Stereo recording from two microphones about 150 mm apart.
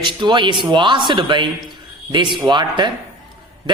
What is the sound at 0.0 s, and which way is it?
A man's voice, 30° right (ahead or behind).